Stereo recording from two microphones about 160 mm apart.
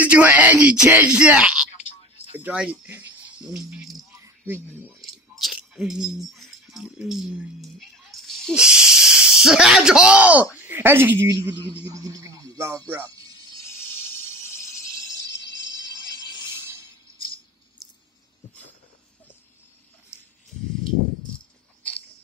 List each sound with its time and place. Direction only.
0.0 s speech: 10° right (ahead or behind)
4.2 s music: 15° right (ahead or behind)
5.4 s speech: centre (ahead or behind)
20.1 s a sound: 5° right (ahead or behind)